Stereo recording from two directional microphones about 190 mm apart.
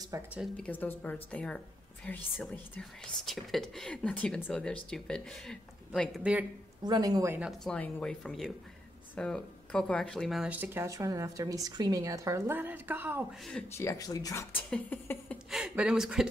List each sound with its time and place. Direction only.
0.1 s speech: 10° right (ahead or behind)
0.6 s speech: 10° left (ahead or behind)
6.8 s speech: 20° right (ahead or behind)
7.3 s speech: centre (ahead or behind)
13.5 s speech: 10° left (ahead or behind)
15.5 s speech: 5° right (ahead or behind)